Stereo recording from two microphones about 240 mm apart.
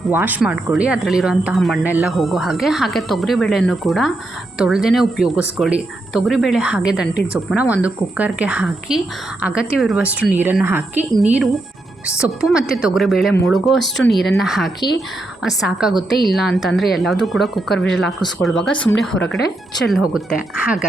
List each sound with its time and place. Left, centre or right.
0.1 s a woman's voice: centre
14.8 s speech: centre
15.4 s speech: centre